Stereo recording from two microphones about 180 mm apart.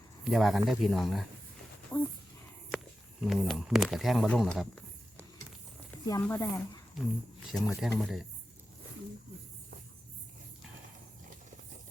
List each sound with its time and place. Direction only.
0.3 s speech: centre (ahead or behind)
1.9 s speech: 15° left (ahead or behind)
2.7 s a sound: centre (ahead or behind)
3.8 s speech: centre (ahead or behind)
6.2 s speech: 15° left (ahead or behind)
7.0 s speech: centre (ahead or behind)